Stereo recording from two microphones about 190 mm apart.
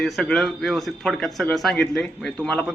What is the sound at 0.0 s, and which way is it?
Speech, 5° left (ahead or behind).